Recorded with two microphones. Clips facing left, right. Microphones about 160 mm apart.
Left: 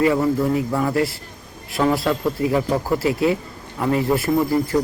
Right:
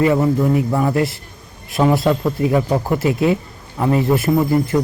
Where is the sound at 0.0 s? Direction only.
20° right (ahead or behind).